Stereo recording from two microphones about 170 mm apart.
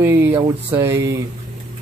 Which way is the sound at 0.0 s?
15° right (ahead or behind).